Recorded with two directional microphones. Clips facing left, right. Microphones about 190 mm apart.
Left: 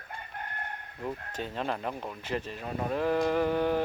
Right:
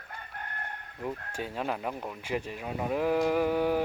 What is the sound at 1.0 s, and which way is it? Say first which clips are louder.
Speech: even; 10° right (ahead or behind).